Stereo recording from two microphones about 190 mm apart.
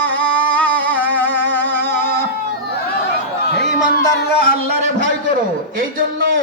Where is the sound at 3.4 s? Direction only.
55° left (ahead or behind).